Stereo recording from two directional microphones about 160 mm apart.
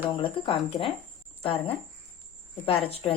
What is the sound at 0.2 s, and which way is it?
A woman's voice, 35° left (ahead or behind).